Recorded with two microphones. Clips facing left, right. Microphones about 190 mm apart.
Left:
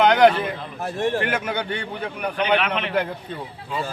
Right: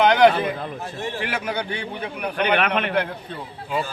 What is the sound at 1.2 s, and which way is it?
Speech, centre (ahead or behind).